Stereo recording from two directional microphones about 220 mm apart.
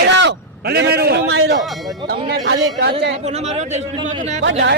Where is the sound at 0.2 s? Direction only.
50° right (ahead or behind).